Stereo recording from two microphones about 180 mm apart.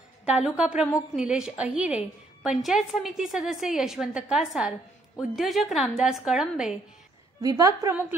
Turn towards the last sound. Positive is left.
turn(degrees=-20)  # may be behind; listen again after turning